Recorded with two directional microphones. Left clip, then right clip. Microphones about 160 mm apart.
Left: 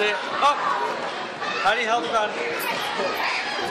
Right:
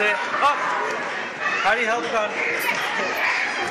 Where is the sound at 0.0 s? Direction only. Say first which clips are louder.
Right 1 dB; centre (ahead or behind).